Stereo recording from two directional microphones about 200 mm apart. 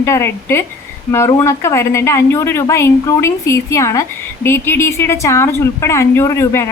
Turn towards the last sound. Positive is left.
turn(degrees=15)  # may be behind; listen again after turning